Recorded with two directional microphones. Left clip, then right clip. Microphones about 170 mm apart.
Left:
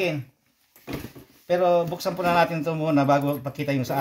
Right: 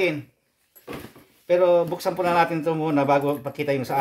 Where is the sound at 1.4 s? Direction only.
35° right (ahead or behind).